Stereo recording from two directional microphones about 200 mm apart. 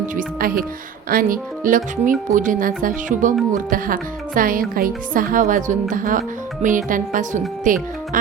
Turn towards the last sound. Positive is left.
turn(degrees=-40)  # may be behind; listen again after turning